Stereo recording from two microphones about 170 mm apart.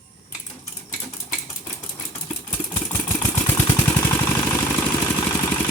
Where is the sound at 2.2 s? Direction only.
15° left (ahead or behind).